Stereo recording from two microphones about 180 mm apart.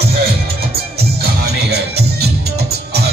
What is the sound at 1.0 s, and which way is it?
Music, 60° right (ahead or behind).